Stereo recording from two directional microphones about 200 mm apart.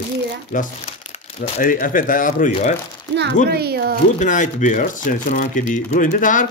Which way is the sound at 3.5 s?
55° right (ahead or behind).